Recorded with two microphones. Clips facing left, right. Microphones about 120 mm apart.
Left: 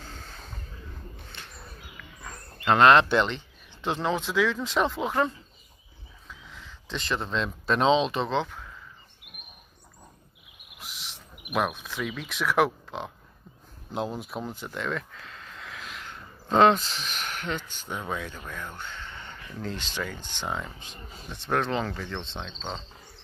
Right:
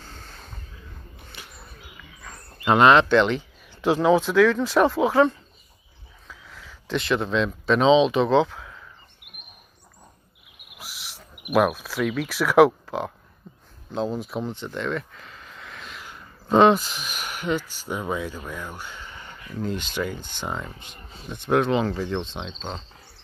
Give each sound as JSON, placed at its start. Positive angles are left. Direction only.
{"t": 0.0, "sound": "a sound", "side_deg": -10}
{"t": 2.6, "sound": "speech", "side_deg": -5}
{"t": 3.3, "sound": "a sound", "side_deg": -10}
{"t": 4.0, "sound": "speech", "side_deg": -10}
{"t": 4.6, "sound": "speech", "side_deg": -70}
{"t": 6.5, "sound": "speech", "side_deg": -5}
{"t": 10.8, "sound": "a sound", "side_deg": -5}
{"t": 12.3, "sound": "speech", "side_deg": -5}
{"t": 13.9, "sound": "speech", "side_deg": 5}